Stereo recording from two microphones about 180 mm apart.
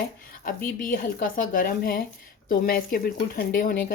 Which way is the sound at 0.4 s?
50° left (ahead or behind).